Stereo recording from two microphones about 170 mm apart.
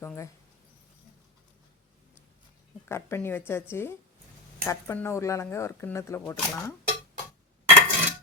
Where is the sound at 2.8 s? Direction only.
15° left (ahead or behind).